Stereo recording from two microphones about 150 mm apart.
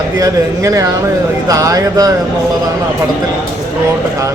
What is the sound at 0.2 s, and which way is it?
Speech, 20° right (ahead or behind).